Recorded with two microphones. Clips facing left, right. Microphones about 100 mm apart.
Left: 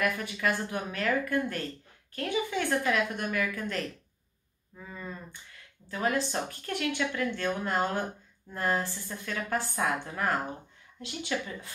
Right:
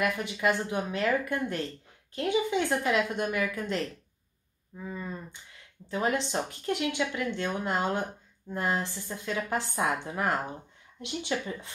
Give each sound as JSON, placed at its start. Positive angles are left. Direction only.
{"t": 0.0, "sound": "speech", "side_deg": -20}
{"t": 4.7, "sound": "a sound", "side_deg": -15}
{"t": 5.9, "sound": "speech", "side_deg": -25}